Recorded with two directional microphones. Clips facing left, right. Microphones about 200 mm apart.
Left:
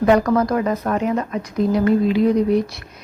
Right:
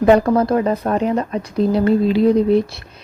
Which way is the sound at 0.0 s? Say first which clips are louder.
Right 2 dB; 30° right (ahead or behind).